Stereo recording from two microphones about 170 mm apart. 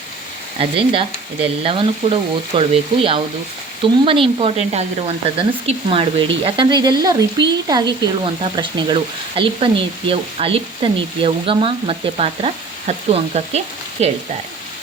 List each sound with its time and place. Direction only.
0.6 s speech: 30° right (ahead or behind)